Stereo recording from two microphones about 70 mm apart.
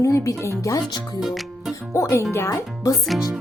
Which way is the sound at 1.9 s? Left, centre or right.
Left.